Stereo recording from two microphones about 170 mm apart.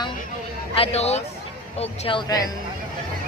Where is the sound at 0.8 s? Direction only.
40° left (ahead or behind).